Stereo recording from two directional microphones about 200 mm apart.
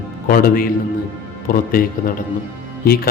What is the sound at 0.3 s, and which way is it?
Speech, 45° left (ahead or behind).